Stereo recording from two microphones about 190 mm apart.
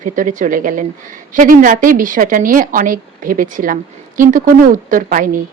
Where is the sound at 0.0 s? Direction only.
45° right (ahead or behind).